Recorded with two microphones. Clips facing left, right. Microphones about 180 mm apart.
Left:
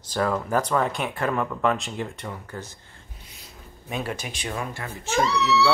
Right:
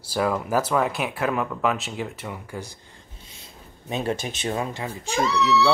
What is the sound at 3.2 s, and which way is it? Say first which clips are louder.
Speech: even; 25° right (ahead or behind).